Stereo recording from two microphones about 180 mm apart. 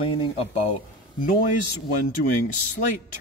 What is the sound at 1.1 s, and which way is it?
Speech, 50° left (ahead or behind).